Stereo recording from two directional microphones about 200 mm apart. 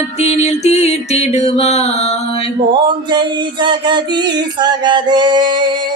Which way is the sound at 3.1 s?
20° right (ahead or behind).